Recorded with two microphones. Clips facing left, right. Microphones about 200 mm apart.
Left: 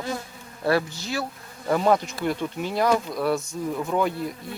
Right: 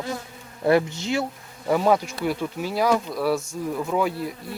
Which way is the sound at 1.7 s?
5° right (ahead or behind).